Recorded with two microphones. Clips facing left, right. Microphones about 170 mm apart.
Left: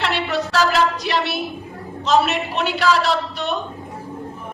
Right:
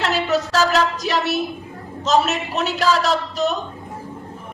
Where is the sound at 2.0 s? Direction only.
40° right (ahead or behind).